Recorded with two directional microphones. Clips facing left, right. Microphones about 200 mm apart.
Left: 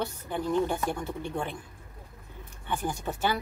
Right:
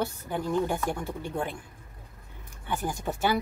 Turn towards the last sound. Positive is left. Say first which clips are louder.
# right 2 dB
turn(degrees=-10)  # may be behind; listen again after turning